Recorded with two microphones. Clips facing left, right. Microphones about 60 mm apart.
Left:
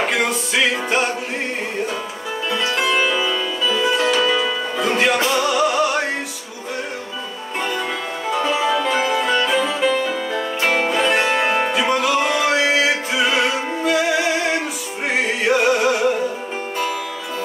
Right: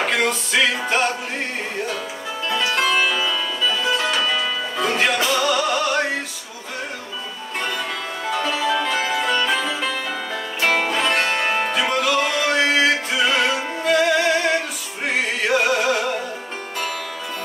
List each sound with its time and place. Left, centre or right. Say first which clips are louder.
0.1 s music: even; centre
2.5 s music: even; centre
8.3 s music: left 3 dB; centre